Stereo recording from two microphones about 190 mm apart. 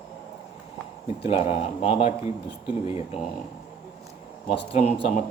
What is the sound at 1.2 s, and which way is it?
A man's voice, 30° left (ahead or behind).